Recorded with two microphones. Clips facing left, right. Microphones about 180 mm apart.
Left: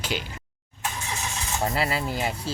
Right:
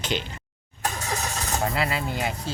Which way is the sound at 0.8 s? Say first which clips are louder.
Right 3 dB; 40° right (ahead or behind).